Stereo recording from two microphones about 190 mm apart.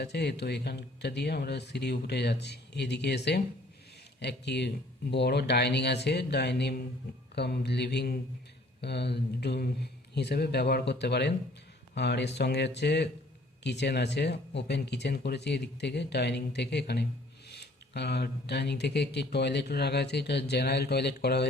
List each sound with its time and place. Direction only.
0.0 s speech: 60° left (ahead or behind)